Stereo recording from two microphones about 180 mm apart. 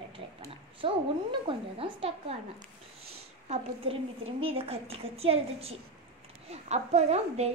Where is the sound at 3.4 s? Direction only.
35° right (ahead or behind).